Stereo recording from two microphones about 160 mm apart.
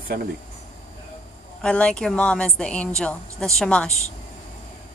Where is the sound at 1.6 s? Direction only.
5° left (ahead or behind).